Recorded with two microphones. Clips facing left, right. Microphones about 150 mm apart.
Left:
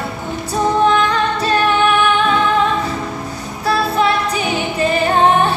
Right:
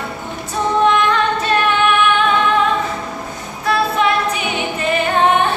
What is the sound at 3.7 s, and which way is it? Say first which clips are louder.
Music: left 1 dB; 35° left (ahead or behind).